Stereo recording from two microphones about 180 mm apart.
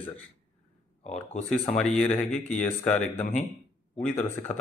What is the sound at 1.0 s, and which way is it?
Speech, 40° left (ahead or behind).